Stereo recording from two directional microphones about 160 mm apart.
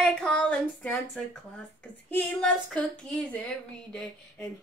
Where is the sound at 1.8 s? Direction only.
10° left (ahead or behind).